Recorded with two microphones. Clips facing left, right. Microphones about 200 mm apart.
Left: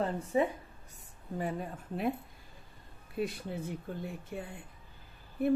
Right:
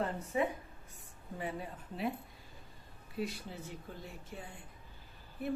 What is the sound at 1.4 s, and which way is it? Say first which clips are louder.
Speech: left 4 dB; 45° left (ahead or behind).